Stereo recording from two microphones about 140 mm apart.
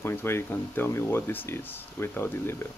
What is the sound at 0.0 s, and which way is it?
Speech, 15° left (ahead or behind).